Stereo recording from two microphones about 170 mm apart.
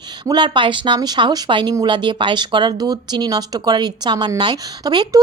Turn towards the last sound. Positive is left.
turn(degrees=-25)  # may be behind; listen again after turning